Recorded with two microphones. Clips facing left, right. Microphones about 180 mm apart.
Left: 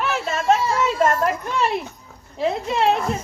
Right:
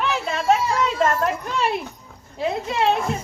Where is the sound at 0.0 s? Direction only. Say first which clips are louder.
Even; centre (ahead or behind).